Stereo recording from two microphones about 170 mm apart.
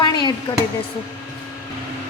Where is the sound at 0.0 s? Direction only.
25° left (ahead or behind).